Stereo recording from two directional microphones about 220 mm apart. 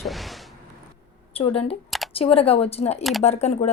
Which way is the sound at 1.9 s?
Centre (ahead or behind).